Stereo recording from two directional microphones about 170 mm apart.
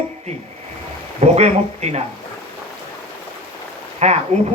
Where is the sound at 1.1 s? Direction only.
40° right (ahead or behind).